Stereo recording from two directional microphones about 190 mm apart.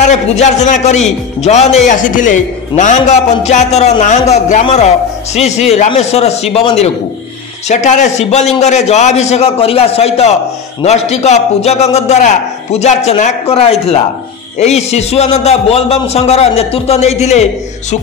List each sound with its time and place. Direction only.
0.1 s a man's voice: 40° left (ahead or behind)